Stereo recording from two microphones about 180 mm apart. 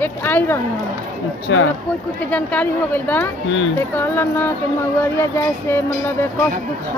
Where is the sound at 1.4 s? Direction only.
90° left.